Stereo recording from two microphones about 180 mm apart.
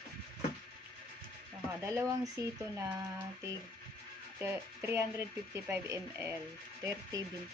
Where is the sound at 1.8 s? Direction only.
15° right (ahead or behind).